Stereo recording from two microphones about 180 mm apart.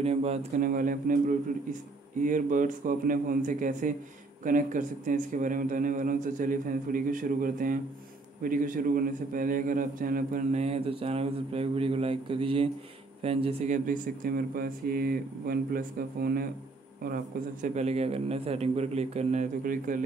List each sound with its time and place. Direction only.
0.0 s a man's voice: 35° right (ahead or behind)
0.7 s a man's voice: 50° right (ahead or behind)
17.7 s a man's voice: 35° right (ahead or behind)